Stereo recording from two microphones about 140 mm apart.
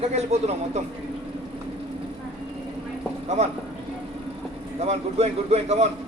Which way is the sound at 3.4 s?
50° right (ahead or behind).